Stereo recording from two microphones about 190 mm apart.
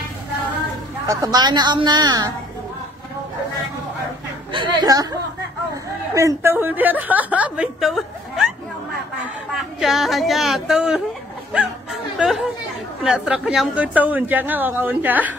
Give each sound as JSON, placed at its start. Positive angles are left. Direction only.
{"t": 1.0, "sound": "a man's voice", "side_deg": -20}
{"t": 4.5, "sound": "a man's voice", "side_deg": -25}
{"t": 6.1, "sound": "a woman's voice", "side_deg": -15}